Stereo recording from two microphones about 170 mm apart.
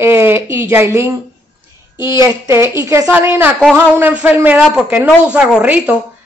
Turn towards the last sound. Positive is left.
turn(degrees=-5)  # may be behind; listen again after turning